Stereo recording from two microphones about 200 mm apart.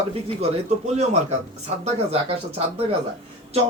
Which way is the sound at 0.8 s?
35° right (ahead or behind).